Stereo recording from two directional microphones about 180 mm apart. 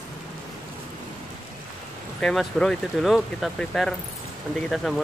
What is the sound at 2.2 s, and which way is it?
Speech, 5° left (ahead or behind).